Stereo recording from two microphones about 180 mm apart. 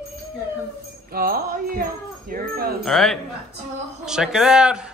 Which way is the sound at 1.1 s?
55° right (ahead or behind).